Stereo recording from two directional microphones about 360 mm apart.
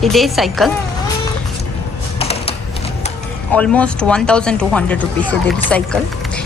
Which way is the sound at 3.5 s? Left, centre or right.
Centre.